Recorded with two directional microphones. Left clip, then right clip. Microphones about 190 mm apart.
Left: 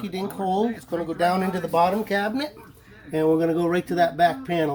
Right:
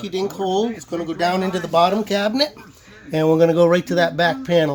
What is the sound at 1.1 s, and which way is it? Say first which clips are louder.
Speech: right 3 dB; 25° right (ahead or behind).